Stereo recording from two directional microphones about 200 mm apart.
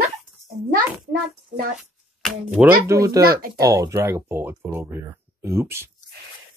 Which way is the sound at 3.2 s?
50° right (ahead or behind).